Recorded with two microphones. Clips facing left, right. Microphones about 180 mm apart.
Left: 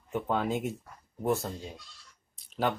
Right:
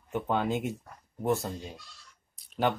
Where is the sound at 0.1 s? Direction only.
Centre (ahead or behind).